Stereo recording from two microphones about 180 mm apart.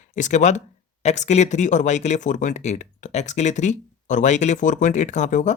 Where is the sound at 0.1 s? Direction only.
40° left (ahead or behind).